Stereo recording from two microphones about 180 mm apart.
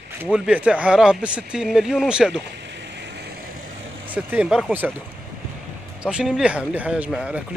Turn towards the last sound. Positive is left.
turn(degrees=-5)  # may be behind; listen again after turning